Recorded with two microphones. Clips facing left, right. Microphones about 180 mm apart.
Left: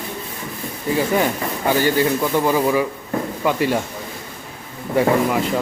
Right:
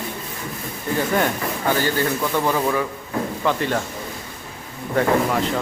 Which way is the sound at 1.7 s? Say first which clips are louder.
Left 4 dB; 15° left (ahead or behind).